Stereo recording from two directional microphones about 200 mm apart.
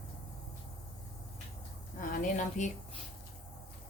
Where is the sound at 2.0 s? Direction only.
40° left (ahead or behind).